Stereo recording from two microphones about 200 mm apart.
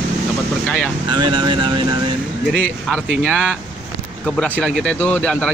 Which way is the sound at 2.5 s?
Centre (ahead or behind).